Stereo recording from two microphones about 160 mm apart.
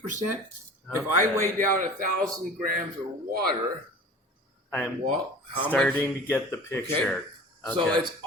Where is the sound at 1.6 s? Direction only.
60° right (ahead or behind).